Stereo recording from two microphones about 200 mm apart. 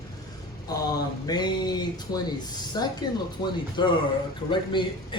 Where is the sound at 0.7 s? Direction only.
20° left (ahead or behind).